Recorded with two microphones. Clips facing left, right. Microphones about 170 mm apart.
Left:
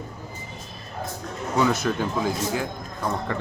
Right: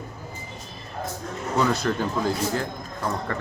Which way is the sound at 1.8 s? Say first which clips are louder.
Even; 5° left (ahead or behind).